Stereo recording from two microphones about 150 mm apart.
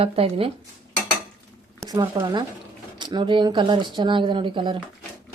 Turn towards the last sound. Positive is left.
turn(degrees=-35)  # may be behind; listen again after turning